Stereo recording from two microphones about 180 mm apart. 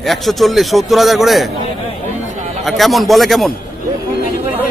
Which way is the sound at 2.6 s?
Centre (ahead or behind).